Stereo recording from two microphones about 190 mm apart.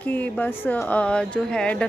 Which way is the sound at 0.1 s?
10° left (ahead or behind).